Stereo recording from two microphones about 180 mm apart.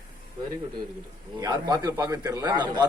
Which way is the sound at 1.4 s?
20° right (ahead or behind).